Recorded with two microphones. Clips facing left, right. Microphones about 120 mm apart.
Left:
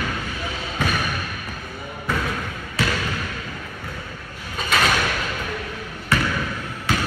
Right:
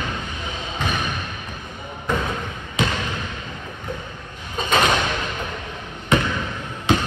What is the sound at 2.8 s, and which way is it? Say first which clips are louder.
Basketball bounce: right 1 dB; 20° right (ahead or behind).